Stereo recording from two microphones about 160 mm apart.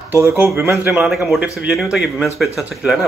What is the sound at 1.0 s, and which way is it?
A man's voice, centre (ahead or behind).